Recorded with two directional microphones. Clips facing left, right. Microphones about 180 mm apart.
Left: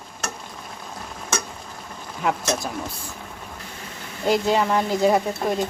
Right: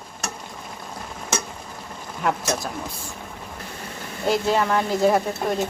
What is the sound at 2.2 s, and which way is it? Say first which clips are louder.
Speech: even; centre (ahead or behind).